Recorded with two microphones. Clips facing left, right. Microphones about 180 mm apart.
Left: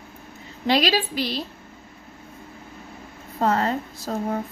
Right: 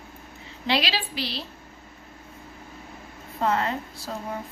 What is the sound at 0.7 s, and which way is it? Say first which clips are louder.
Speech: left 6 dB; 45° left (ahead or behind).